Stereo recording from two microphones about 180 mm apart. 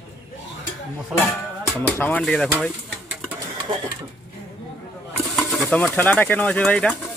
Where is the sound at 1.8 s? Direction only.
10° left (ahead or behind).